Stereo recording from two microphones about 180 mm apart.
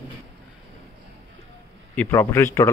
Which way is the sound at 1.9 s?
15° left (ahead or behind).